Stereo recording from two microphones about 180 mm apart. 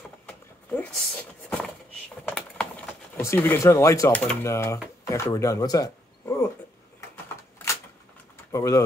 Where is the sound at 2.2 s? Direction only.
5° left (ahead or behind); by 5.9 s 20° left (ahead or behind).